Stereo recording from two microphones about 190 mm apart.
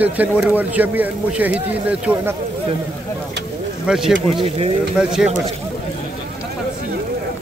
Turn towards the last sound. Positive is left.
turn(degrees=-5)  # may be behind; listen again after turning